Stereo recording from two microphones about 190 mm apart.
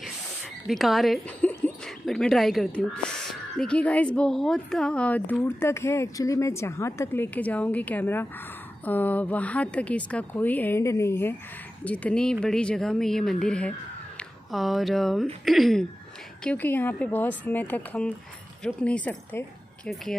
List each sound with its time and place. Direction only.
0.7 s a woman's voice: centre (ahead or behind)